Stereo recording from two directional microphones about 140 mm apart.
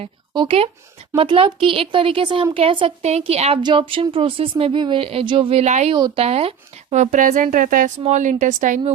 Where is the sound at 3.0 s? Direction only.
50° right (ahead or behind).